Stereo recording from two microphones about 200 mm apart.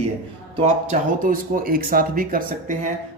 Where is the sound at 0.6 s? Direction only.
35° right (ahead or behind).